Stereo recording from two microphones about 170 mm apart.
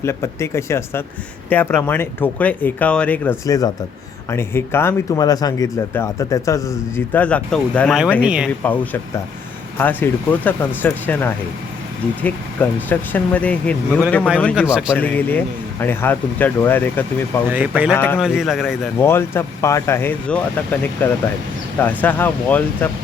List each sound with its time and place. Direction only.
0.0 s speech: 15° left (ahead or behind)
3.4 s speech: 20° left (ahead or behind)
8.2 s a man's voice: 5° right (ahead or behind)
8.6 s speech: 10° left (ahead or behind)
14.7 s a man's voice: 5° right (ahead or behind)
14.9 s speech: 10° left (ahead or behind)
17.5 s speech: 10° right (ahead or behind)
17.9 s speech: 10° left (ahead or behind)
18.2 s a man's voice: centre (ahead or behind)
18.9 s speech: 15° left (ahead or behind)